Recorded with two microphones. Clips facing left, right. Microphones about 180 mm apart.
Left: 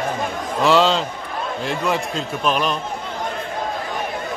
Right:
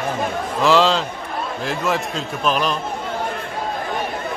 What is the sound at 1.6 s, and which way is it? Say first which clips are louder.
A man's voice: even; centre (ahead or behind).